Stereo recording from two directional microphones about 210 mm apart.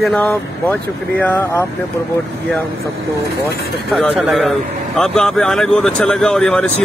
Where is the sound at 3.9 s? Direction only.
Centre (ahead or behind).